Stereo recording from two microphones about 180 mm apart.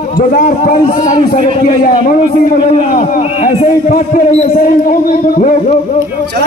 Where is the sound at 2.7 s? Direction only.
35° left (ahead or behind).